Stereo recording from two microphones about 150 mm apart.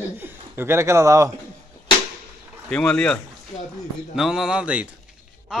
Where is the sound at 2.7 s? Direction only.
5° left (ahead or behind).